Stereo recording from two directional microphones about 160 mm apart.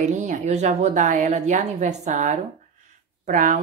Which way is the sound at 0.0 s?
50° right (ahead or behind).